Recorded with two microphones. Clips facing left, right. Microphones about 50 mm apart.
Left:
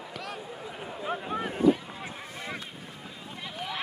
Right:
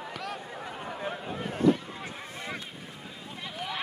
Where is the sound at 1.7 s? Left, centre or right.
Centre.